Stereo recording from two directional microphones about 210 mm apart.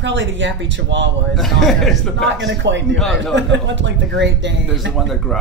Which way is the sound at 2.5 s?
60° right (ahead or behind).